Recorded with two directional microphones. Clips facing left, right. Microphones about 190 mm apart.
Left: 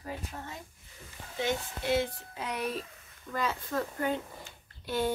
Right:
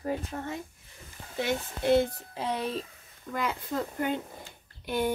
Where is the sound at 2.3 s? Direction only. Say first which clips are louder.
Right 3 dB; 30° right (ahead or behind).